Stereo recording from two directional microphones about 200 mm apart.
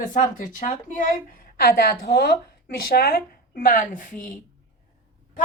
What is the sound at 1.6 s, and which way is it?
Speech, 50° left (ahead or behind).